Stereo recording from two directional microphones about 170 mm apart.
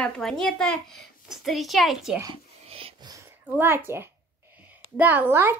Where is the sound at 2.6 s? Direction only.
35° right (ahead or behind).